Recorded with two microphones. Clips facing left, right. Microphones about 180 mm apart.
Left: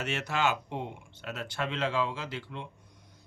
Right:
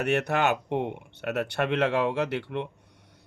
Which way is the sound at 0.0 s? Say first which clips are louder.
Right 6 dB; 60° right (ahead or behind).